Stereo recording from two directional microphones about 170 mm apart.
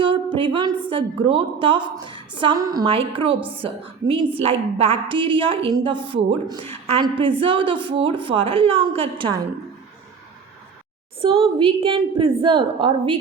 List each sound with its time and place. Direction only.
0.0 s a woman's voice: 30° right (ahead or behind)
11.2 s a woman's voice: 30° right (ahead or behind)